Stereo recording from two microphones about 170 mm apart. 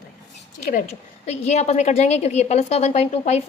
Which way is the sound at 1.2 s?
40° left (ahead or behind).